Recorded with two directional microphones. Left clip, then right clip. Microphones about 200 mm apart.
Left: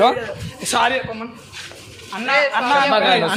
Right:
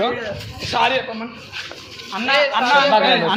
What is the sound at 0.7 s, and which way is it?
Speech, 40° left (ahead or behind).